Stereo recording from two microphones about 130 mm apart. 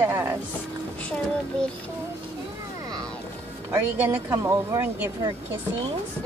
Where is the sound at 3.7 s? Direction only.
20° right (ahead or behind).